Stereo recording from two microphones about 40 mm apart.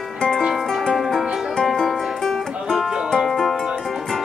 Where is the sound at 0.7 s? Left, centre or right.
Centre.